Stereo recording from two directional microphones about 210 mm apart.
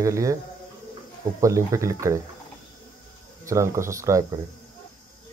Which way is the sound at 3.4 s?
15° right (ahead or behind).